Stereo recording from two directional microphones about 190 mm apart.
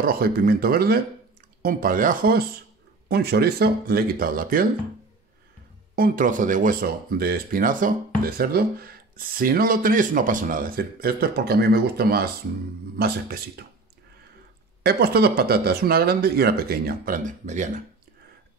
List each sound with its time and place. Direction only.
0.0 s speech: 50° right (ahead or behind)
5.9 s speech: 50° right (ahead or behind)
14.8 s speech: 55° right (ahead or behind)